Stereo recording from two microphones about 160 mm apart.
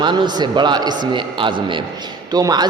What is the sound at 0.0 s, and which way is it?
A man's voice, 25° right (ahead or behind).